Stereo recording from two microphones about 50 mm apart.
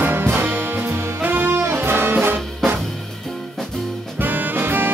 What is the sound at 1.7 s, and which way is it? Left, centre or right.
Music, right.